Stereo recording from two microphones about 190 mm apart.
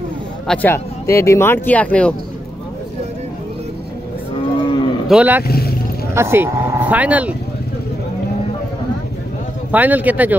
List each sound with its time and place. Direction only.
0.5 s speech: 10° left (ahead or behind)
4.6 s cattle: 25° left (ahead or behind)
5.0 s speech: 5° right (ahead or behind)
5.5 s speech: 55° left (ahead or behind)
6.1 s speech: 10° right (ahead or behind)
9.7 s speech: 10° right (ahead or behind)